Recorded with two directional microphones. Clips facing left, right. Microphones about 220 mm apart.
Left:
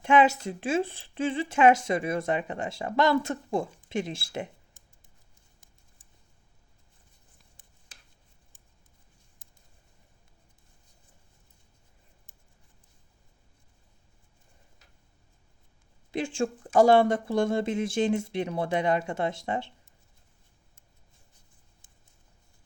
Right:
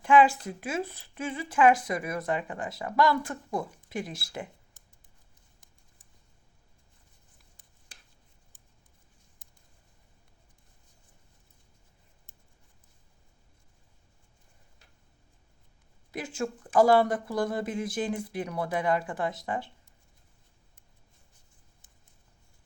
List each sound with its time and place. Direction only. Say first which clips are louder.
0.0 s speech: even; 25° left (ahead or behind)
16.1 s speech: left 4 dB; 30° left (ahead or behind)